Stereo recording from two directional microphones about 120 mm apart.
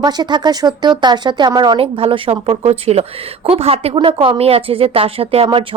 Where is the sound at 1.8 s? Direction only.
50° right (ahead or behind).